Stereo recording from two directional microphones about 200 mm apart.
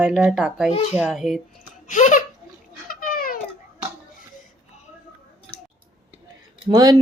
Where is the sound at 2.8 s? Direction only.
45° left (ahead or behind).